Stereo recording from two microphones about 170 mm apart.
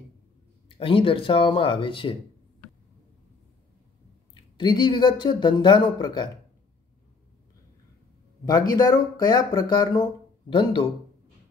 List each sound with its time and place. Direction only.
0.7 s speech: 30° left (ahead or behind)
4.3 s speech: 25° left (ahead or behind)
8.5 s speech: 25° left (ahead or behind)